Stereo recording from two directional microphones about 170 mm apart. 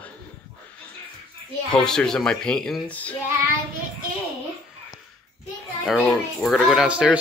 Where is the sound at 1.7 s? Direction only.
5° left (ahead or behind).